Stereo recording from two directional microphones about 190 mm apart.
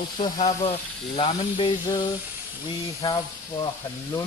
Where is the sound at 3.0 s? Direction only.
25° left (ahead or behind).